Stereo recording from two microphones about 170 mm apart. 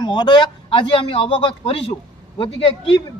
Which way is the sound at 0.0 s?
25° left (ahead or behind).